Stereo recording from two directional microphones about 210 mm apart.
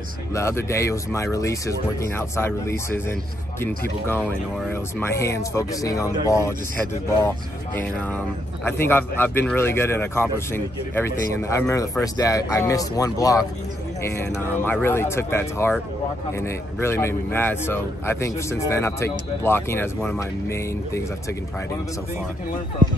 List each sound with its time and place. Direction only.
0.3 s a man's voice: 15° left (ahead or behind)